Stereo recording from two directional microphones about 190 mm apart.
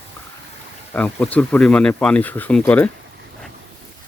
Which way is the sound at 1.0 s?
10° left (ahead or behind).